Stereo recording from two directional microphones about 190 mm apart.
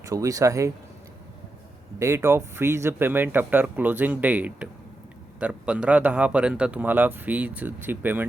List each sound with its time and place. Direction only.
0.0 s speech: 15° right (ahead or behind)
2.0 s speech: 15° right (ahead or behind)